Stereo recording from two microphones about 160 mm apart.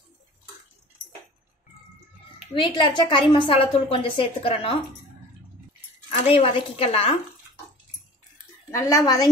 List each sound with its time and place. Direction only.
2.5 s a woman's voice: 30° left (ahead or behind)
6.0 s a woman's voice: 40° left (ahead or behind)
8.7 s a woman's voice: 20° left (ahead or behind)